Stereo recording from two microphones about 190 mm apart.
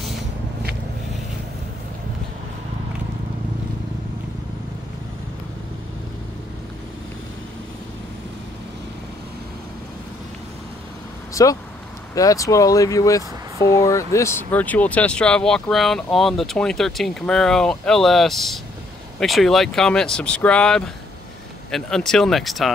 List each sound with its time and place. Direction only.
11.4 s speech: 15° left (ahead or behind); by 22.7 s centre (ahead or behind)